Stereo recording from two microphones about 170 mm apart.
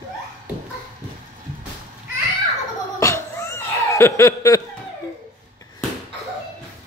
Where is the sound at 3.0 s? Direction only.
15° left (ahead or behind).